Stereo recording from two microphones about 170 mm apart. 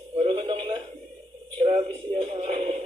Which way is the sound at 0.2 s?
35° right (ahead or behind).